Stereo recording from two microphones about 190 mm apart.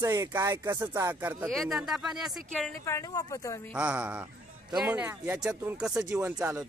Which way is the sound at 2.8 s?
15° left (ahead or behind).